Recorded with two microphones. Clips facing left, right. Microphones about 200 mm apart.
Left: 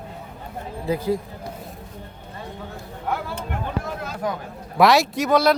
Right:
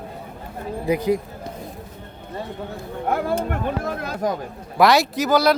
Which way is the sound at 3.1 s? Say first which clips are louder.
Right 6 dB; 50° right (ahead or behind).